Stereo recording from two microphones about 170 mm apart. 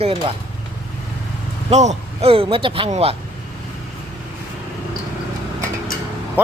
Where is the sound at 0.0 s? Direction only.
35° right (ahead or behind).